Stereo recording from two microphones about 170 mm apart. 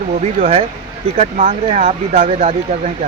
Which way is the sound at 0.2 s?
40° right (ahead or behind).